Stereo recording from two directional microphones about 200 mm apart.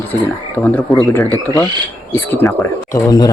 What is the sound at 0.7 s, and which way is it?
Speech, 15° left (ahead or behind).